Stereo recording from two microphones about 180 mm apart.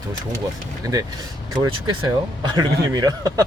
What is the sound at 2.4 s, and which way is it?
Speech, 25° right (ahead or behind).